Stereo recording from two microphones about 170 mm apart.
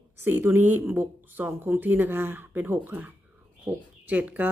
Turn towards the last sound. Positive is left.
turn(degrees=-10)  # may be behind; listen again after turning